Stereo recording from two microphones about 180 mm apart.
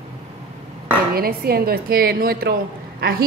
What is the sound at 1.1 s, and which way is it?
A woman's voice, 60° right (ahead or behind).